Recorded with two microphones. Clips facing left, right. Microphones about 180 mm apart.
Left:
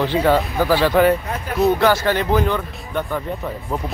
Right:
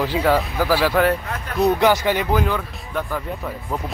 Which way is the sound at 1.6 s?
15° right (ahead or behind).